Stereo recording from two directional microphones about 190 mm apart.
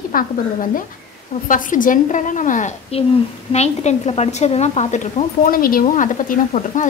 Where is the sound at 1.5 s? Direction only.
45° left (ahead or behind).